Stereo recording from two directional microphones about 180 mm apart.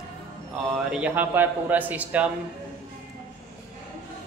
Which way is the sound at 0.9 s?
10° right (ahead or behind).